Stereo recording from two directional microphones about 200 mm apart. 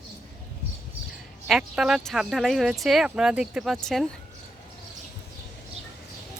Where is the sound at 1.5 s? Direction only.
Centre (ahead or behind).